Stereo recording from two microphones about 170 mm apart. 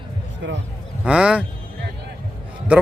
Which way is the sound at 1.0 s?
5° right (ahead or behind).